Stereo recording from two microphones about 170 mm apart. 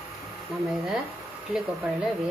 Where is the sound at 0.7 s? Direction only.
Centre (ahead or behind).